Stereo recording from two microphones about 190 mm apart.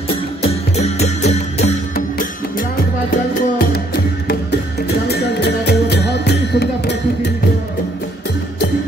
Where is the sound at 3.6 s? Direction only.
55° left (ahead or behind).